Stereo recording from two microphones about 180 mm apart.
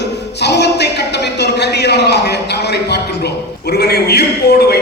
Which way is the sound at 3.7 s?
60° left (ahead or behind).